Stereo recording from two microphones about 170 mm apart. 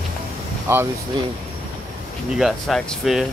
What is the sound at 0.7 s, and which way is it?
Speech, 15° right (ahead or behind).